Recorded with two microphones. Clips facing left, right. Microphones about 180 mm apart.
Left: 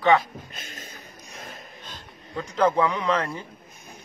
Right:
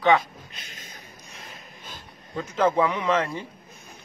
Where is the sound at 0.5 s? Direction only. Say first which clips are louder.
Left 4 dB; 45° left (ahead or behind).